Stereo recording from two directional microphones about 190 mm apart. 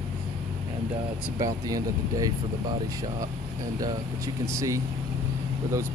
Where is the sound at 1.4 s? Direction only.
20° right (ahead or behind).